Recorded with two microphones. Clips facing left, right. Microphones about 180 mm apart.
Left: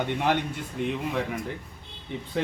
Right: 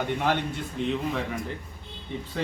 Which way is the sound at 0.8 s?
10° left (ahead or behind).